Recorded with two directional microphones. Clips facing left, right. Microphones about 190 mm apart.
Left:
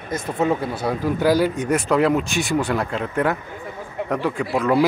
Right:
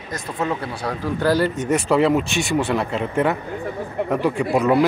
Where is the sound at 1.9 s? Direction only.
Centre (ahead or behind).